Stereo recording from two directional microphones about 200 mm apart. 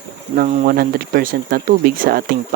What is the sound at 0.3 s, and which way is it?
Speech, 40° right (ahead or behind).